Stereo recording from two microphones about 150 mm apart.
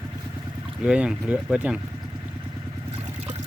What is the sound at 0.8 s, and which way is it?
Speech, 5° right (ahead or behind).